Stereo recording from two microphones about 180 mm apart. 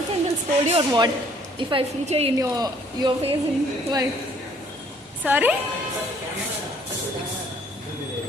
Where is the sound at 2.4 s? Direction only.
20° right (ahead or behind).